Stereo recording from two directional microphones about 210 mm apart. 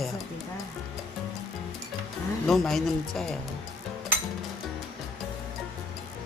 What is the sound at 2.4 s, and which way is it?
Speech, centre (ahead or behind).